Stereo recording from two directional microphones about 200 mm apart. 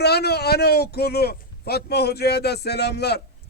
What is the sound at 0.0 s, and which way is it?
A man's voice, 55° left (ahead or behind).